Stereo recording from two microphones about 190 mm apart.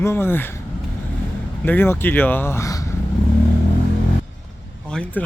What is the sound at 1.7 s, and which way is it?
Speech, 10° left (ahead or behind).